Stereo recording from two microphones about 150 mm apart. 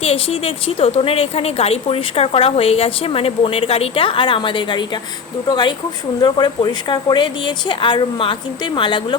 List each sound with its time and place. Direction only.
0.0 s a woman's voice: 40° left (ahead or behind)